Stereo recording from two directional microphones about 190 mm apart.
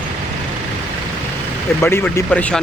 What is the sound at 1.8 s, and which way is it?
Speech, 10° left (ahead or behind).